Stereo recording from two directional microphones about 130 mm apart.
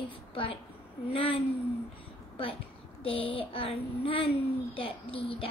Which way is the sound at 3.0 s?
45° left (ahead or behind).